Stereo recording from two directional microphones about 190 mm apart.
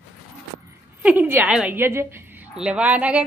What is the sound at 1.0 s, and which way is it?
A woman's voice, 10° right (ahead or behind).